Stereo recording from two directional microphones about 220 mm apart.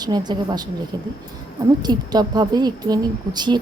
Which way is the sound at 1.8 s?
20° right (ahead or behind).